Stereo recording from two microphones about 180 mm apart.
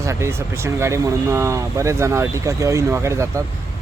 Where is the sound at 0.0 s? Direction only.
15° right (ahead or behind).